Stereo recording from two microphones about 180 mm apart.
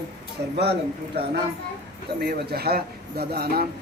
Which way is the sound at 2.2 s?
60° right (ahead or behind).